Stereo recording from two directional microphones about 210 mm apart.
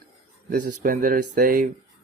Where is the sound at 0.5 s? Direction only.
35° right (ahead or behind).